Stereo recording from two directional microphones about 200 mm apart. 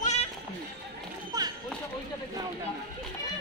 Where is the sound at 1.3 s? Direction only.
20° right (ahead or behind).